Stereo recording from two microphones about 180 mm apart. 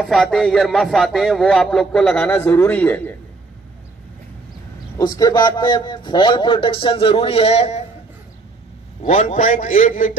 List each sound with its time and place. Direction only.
0.0 s a man's voice: centre (ahead or behind)
4.9 s a man's voice: 20° left (ahead or behind)
9.0 s a man's voice: 40° left (ahead or behind)